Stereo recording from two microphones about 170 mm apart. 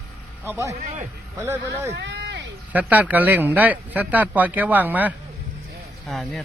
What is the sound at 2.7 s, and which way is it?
Speech, 10° right (ahead or behind).